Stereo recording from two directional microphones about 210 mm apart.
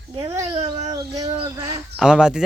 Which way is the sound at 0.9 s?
20° right (ahead or behind).